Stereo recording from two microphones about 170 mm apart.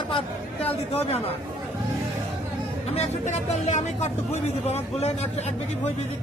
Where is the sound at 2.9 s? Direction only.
40° left (ahead or behind).